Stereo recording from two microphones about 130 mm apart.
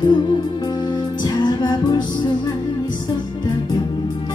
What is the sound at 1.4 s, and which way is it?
Music, 35° left (ahead or behind).